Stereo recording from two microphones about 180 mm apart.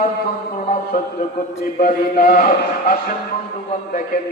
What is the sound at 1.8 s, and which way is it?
Music, 50° left (ahead or behind).